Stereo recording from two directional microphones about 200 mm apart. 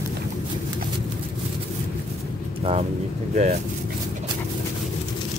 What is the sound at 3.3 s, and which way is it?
Speech, 35° right (ahead or behind).